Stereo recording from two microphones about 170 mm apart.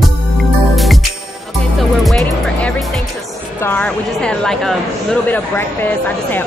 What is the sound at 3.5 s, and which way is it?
Speech, 10° left (ahead or behind).